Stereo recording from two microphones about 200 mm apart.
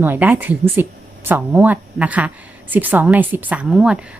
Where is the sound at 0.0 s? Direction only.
10° right (ahead or behind).